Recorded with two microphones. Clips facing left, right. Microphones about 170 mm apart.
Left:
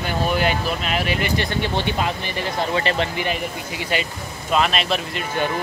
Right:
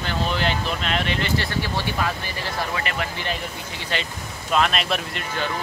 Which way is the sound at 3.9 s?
10° left (ahead or behind).